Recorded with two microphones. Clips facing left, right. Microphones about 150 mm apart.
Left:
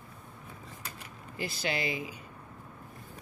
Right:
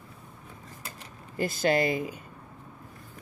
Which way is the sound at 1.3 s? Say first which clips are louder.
Right 9 dB; 50° right (ahead or behind).